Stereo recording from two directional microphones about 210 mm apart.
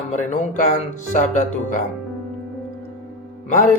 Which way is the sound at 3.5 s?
35° left (ahead or behind).